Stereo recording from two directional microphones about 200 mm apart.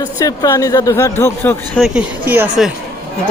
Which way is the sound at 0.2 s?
15° left (ahead or behind).